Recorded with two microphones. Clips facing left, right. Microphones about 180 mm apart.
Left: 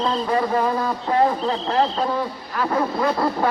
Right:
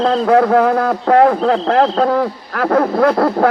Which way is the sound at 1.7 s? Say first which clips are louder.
Right 6 dB; 90° right.